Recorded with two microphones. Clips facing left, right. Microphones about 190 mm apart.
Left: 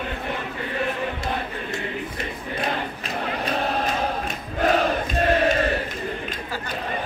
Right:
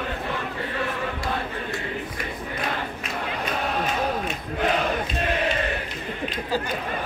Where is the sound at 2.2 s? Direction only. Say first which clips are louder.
Left 2 dB; 30° left (ahead or behind).